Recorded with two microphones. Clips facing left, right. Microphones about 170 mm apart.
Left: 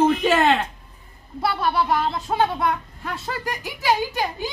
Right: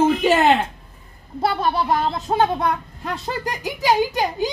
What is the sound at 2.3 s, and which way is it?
Speech, 30° right (ahead or behind).